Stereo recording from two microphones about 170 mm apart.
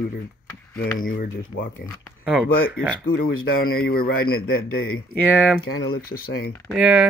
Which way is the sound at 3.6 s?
60° left (ahead or behind).